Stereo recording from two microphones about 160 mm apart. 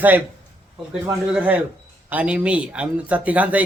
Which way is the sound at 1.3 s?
10° right (ahead or behind).